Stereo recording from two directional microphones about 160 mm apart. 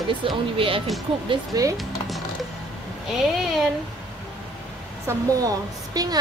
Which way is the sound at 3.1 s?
Centre (ahead or behind).